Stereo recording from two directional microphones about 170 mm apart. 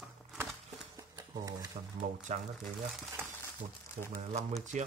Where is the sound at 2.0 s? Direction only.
45° right (ahead or behind).